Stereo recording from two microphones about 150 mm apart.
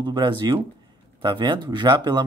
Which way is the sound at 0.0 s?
30° right (ahead or behind).